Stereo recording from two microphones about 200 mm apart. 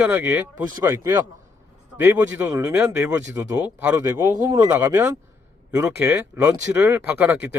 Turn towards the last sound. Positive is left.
turn(degrees=-10)  # may be behind; listen again after turning